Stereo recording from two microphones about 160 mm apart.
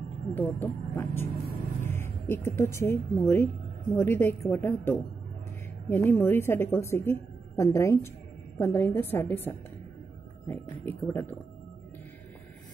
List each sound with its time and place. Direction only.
0.3 s a woman's voice: 10° left (ahead or behind)
10.5 s a woman's voice: 15° left (ahead or behind)